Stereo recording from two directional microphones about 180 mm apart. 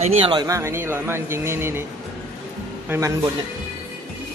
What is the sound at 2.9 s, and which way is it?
Speech, 15° right (ahead or behind).